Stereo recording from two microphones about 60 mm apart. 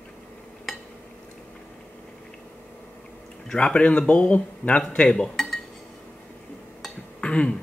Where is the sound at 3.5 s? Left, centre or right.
Centre.